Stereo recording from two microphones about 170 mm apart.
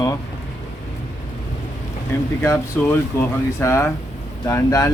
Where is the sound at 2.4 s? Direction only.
15° left (ahead or behind).